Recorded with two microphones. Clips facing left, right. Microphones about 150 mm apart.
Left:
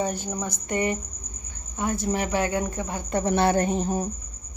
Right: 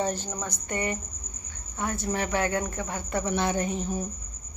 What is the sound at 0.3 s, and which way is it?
Speech, 10° left (ahead or behind).